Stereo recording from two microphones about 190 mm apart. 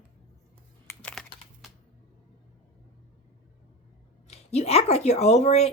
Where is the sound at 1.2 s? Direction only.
Centre (ahead or behind).